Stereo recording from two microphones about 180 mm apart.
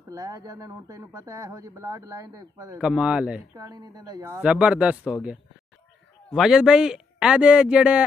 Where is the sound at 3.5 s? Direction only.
20° right (ahead or behind).